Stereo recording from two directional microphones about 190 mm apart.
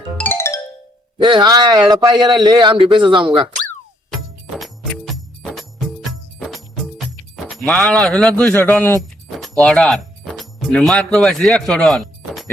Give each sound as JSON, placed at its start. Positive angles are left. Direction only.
{"t": 0.2, "sound": "music", "side_deg": 10}
{"t": 1.2, "sound": "a man's voice", "side_deg": -20}
{"t": 4.1, "sound": "music", "side_deg": 0}
{"t": 7.7, "sound": "a man's voice", "side_deg": 5}
{"t": 9.4, "sound": "music", "side_deg": 5}